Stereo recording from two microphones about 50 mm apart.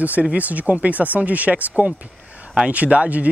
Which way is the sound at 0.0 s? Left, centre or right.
Right.